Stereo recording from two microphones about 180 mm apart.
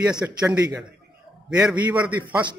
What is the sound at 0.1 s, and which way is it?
A man's voice, 5° right (ahead or behind).